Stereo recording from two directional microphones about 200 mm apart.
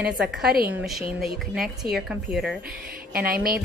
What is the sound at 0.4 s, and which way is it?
Speech, 50° right (ahead or behind).